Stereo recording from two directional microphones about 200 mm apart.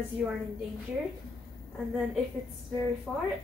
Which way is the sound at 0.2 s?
Centre (ahead or behind).